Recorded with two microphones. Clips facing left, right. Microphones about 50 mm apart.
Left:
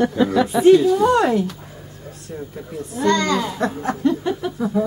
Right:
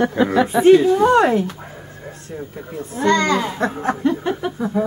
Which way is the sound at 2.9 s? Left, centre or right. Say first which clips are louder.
Right 2 dB; centre.